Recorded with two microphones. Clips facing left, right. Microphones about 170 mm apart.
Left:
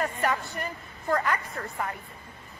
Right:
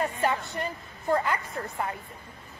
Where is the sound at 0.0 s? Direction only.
25° right (ahead or behind).